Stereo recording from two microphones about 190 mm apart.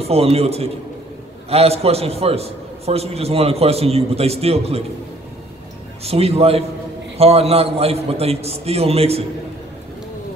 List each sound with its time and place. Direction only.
0.0 s a man's voice: 30° right (ahead or behind)
6.0 s a man's voice: 30° right (ahead or behind)